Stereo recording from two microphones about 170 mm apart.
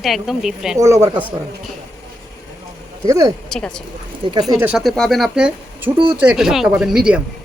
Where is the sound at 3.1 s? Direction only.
20° right (ahead or behind).